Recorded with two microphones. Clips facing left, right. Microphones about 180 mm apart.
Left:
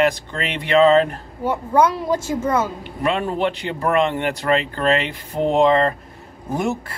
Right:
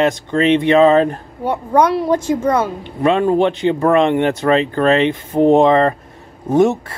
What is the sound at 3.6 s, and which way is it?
Speech, 20° right (ahead or behind).